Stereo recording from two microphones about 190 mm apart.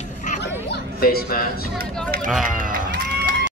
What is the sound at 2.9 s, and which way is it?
Run, 60° right (ahead or behind).